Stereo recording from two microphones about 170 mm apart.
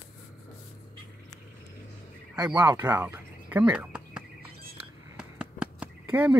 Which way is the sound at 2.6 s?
10° right (ahead or behind).